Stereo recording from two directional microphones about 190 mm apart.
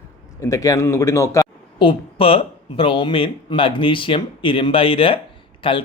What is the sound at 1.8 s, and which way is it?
Speech, 30° left (ahead or behind).